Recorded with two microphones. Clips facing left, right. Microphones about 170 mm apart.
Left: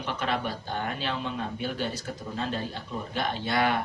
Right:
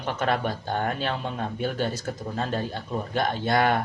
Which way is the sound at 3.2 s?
50° right (ahead or behind).